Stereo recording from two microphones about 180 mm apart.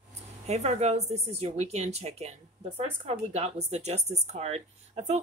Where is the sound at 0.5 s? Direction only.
40° right (ahead or behind).